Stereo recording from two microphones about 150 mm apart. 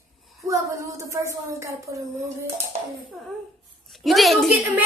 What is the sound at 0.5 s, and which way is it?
Speech, 20° right (ahead or behind).